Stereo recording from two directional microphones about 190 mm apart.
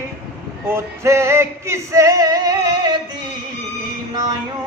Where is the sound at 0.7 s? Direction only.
15° right (ahead or behind).